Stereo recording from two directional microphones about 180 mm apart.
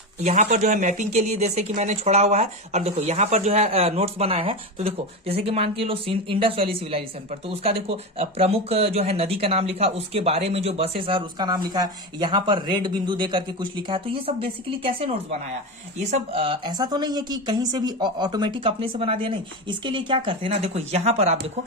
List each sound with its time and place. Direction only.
0.2 s speech: 45° right (ahead or behind)